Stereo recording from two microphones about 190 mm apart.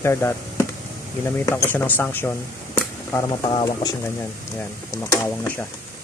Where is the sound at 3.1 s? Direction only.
25° left (ahead or behind).